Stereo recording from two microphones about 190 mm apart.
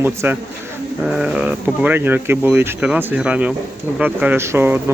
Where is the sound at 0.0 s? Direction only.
10° right (ahead or behind).